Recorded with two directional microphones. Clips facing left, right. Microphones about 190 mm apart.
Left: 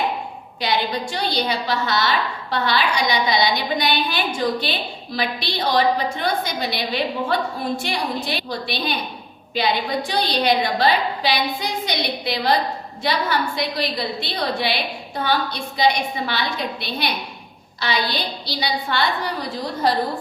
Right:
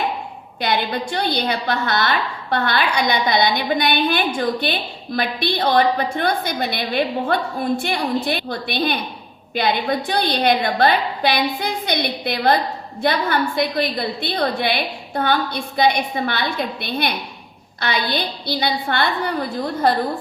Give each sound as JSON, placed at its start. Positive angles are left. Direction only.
{"t": 0.6, "sound": "a woman's voice", "side_deg": -55}